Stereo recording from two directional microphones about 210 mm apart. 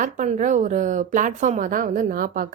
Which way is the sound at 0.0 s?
35° right (ahead or behind).